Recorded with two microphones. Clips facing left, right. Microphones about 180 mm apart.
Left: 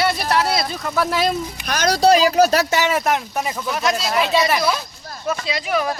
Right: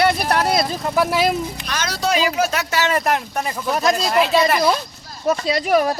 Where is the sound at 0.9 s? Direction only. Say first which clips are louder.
Right 1 dB; 10° right (ahead or behind).